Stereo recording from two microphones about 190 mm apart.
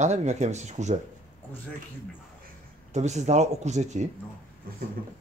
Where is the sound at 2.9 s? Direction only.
35° right (ahead or behind).